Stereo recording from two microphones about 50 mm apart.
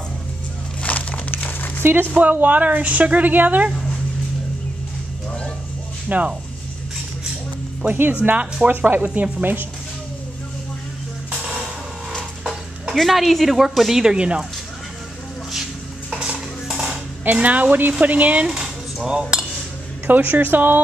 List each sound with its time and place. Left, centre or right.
0.8 s crumpling: left
1.8 s speech: right
2.1 s a woman's voice: right
6.0 s speech: right
8.1 s a woman's voice: right
12.9 s a woman's voice: centre
14.1 s speech: right
16.6 s dishes: centre
17.2 s a woman's voice: right
18.5 s cutlery: centre
20.1 s a woman's voice: right